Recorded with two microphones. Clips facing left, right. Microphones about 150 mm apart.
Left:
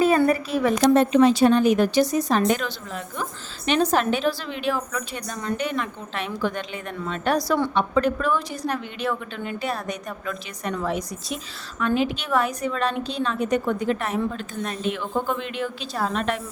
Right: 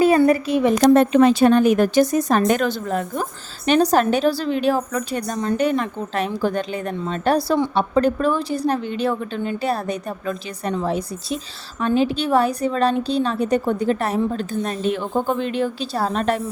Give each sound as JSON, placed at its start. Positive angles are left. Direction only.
{"t": 0.8, "sound": "a woman's voice", "side_deg": -55}